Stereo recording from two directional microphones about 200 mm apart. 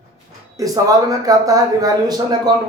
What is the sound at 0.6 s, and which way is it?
A man's voice, 15° right (ahead or behind).